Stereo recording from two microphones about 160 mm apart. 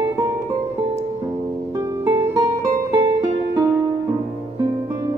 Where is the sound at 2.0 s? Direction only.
15° right (ahead or behind).